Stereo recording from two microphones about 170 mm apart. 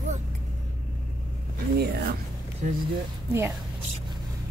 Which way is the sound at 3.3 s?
15° right (ahead or behind).